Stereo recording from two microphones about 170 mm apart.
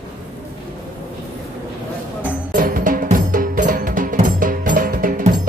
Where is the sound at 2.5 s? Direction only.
55° right (ahead or behind).